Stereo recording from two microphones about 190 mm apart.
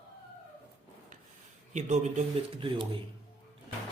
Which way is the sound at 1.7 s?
40° right (ahead or behind).